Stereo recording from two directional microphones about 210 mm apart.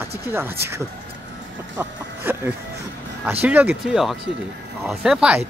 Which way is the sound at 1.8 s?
10° right (ahead or behind).